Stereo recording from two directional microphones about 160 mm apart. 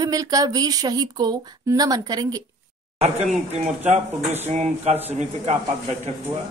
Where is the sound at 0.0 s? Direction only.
20° right (ahead or behind).